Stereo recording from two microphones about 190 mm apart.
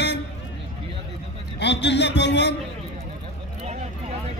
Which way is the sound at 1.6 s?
65° left (ahead or behind).